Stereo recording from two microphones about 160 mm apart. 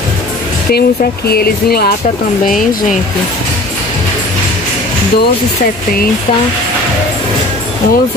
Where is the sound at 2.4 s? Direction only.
55° left (ahead or behind).